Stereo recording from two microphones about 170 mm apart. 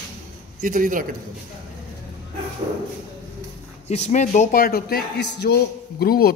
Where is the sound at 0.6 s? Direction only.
55° right (ahead or behind).